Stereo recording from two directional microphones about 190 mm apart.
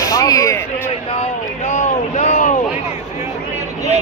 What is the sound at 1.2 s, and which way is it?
Vehicle, 40° left (ahead or behind).